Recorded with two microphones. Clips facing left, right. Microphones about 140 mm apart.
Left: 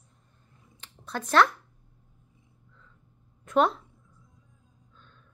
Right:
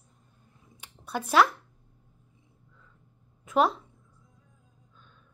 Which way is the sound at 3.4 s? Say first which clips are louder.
Left 1 dB; 5° right (ahead or behind).